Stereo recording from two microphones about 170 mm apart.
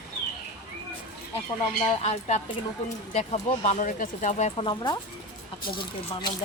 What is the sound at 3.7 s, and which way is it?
Speech, 50° left (ahead or behind).